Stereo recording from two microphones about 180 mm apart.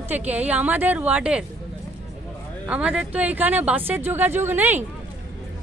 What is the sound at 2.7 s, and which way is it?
Speech, 5° right (ahead or behind).